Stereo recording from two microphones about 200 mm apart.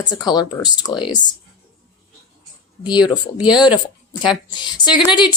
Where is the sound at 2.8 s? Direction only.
20° left (ahead or behind).